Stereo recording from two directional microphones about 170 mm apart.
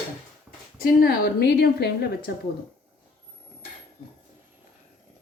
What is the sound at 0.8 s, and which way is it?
A woman's voice, 65° left (ahead or behind).